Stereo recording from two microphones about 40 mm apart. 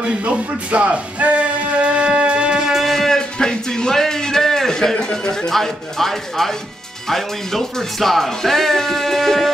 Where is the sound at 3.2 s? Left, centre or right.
Centre.